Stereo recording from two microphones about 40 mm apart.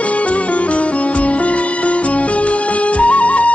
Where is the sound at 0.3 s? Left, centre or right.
Left.